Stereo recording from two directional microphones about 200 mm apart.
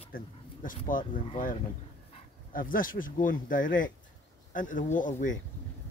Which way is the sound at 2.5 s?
45° left (ahead or behind).